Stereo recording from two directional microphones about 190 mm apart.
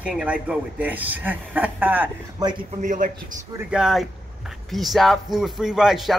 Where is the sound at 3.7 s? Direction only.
Centre (ahead or behind).